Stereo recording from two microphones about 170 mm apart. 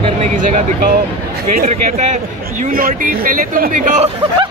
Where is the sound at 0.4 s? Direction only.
45° right (ahead or behind).